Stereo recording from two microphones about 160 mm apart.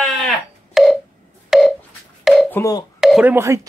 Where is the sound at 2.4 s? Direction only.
10° left (ahead or behind).